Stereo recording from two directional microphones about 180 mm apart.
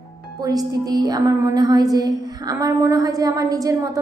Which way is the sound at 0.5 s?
20° right (ahead or behind).